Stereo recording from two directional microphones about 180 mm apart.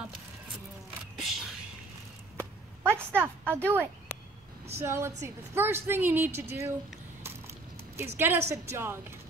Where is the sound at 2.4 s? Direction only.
15° right (ahead or behind).